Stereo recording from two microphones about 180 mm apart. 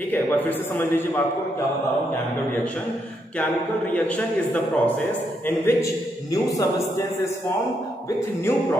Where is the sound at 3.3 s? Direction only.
10° left (ahead or behind).